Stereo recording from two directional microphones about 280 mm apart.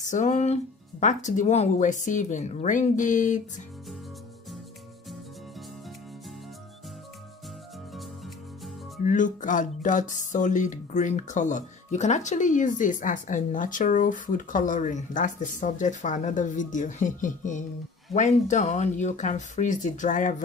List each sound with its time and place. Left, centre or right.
0.0 s speech: left
9.0 s speech: left